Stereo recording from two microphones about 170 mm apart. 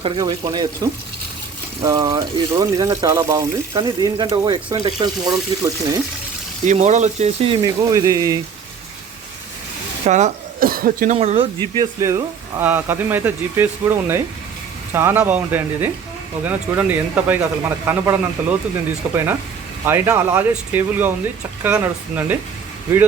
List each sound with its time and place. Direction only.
0.0 s speech: 25° right (ahead or behind)
1.8 s speech: 20° right (ahead or behind)
3.8 s speech: 30° right (ahead or behind)
6.7 s speech: 45° right (ahead or behind); by 8.4 s 20° right (ahead or behind)
10.1 s speech: 45° right (ahead or behind)
11.2 s speech: 40° right (ahead or behind)
11.6 s speech: 25° right (ahead or behind)